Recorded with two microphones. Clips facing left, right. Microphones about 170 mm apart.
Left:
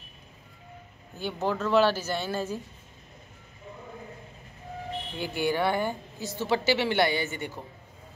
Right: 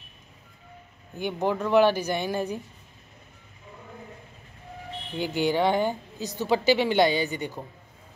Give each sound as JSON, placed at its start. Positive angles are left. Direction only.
{"t": 1.1, "sound": "a woman's voice", "side_deg": -15}
{"t": 5.1, "sound": "a woman's voice", "side_deg": -15}